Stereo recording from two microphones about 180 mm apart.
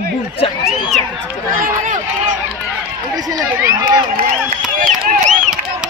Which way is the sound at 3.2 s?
20° right (ahead or behind).